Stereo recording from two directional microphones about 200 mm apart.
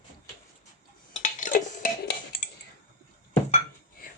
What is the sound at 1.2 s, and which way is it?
Dishes, 40° left (ahead or behind).